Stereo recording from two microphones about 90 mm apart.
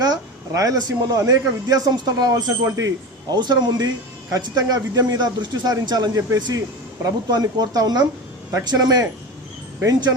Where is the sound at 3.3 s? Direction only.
55° right (ahead or behind).